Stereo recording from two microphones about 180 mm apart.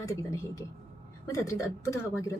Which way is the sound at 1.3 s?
15° left (ahead or behind).